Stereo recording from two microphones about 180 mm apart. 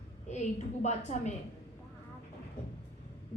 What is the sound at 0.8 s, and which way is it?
Speech, 40° left (ahead or behind).